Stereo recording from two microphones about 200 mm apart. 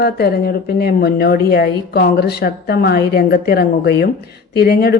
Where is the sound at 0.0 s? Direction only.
55° left (ahead or behind).